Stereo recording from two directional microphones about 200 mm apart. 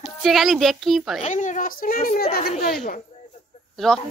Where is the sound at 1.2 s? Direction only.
40° left (ahead or behind).